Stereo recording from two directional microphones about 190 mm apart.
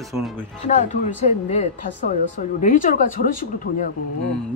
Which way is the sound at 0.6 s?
40° left (ahead or behind).